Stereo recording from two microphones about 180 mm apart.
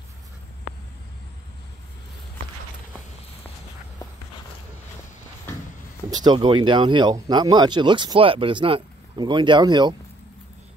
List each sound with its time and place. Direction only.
6.0 s speech: 25° right (ahead or behind)